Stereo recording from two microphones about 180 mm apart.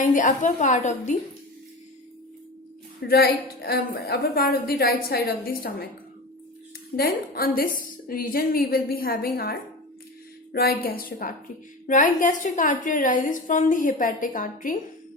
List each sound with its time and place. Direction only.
0.0 s a woman's voice: 45° left (ahead or behind)
3.0 s a woman's voice: 60° left (ahead or behind)
6.9 s a woman's voice: 60° left (ahead or behind)